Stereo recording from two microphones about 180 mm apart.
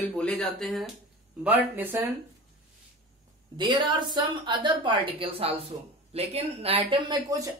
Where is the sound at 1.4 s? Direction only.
10° right (ahead or behind).